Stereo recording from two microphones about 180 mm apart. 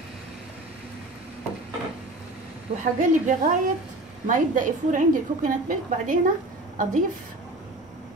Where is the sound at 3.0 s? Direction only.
45° right (ahead or behind).